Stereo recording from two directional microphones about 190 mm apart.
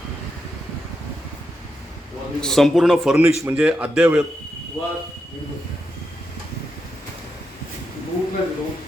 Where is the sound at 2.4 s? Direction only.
Centre (ahead or behind).